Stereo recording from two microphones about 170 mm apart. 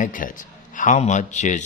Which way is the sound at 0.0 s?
50° left (ahead or behind).